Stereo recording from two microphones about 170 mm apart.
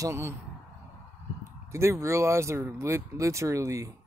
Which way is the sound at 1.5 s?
15° right (ahead or behind).